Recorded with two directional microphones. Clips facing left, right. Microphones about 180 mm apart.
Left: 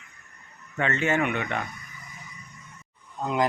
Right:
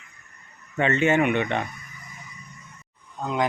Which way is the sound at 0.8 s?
20° right (ahead or behind).